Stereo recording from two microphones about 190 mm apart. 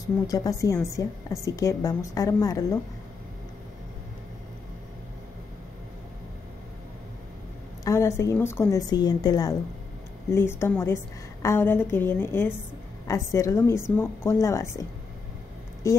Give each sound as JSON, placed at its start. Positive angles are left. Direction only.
{"t": 0.0, "sound": "a woman's voice", "side_deg": 20}
{"t": 7.8, "sound": "a woman's voice", "side_deg": 15}